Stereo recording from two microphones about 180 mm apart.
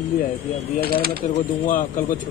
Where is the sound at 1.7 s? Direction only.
50° left (ahead or behind).